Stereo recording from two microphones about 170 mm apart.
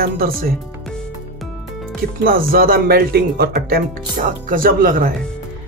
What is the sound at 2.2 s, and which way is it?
Speech, 60° right (ahead or behind).